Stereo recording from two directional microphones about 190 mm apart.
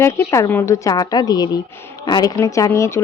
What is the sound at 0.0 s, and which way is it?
Speech, 15° left (ahead or behind).